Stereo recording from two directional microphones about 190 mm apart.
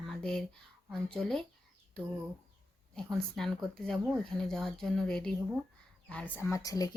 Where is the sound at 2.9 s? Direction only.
Centre (ahead or behind).